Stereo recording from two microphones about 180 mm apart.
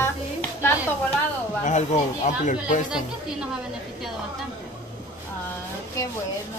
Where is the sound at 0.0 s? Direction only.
15° left (ahead or behind).